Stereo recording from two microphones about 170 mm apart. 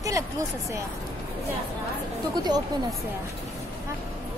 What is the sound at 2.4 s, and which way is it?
Speech, 25° right (ahead or behind).